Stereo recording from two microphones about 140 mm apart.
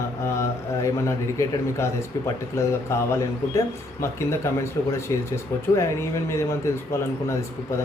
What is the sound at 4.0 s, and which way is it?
A man's voice, 20° left (ahead or behind).